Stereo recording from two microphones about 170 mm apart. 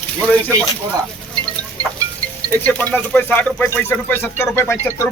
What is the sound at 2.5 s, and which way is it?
Speech, 10° left (ahead or behind).